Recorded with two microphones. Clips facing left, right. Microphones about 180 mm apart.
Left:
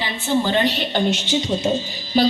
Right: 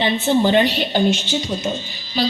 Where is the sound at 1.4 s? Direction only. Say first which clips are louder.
Left 3 dB; 25° left (ahead or behind).